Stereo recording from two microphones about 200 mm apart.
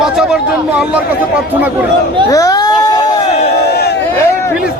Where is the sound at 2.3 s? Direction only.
15° left (ahead or behind).